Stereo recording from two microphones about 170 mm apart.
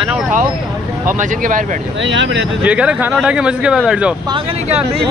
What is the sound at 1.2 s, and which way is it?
Speech, 50° right (ahead or behind).